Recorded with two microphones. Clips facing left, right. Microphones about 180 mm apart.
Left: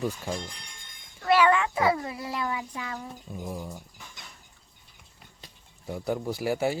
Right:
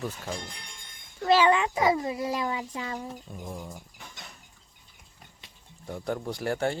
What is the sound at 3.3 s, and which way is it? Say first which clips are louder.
Speech: left 3 dB; 5° left (ahead or behind).